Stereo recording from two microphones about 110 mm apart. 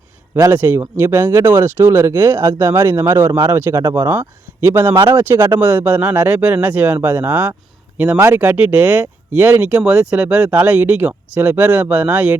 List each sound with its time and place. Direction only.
0.5 s speech: 15° right (ahead or behind)